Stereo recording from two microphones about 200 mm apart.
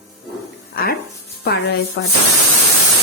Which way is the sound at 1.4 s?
50° left (ahead or behind).